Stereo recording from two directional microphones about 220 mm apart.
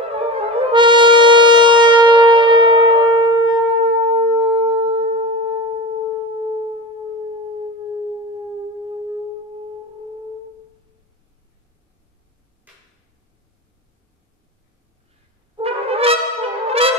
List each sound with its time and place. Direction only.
0.0 s music: 25° right (ahead or behind)
15.5 s brass instrument: 25° right (ahead or behind)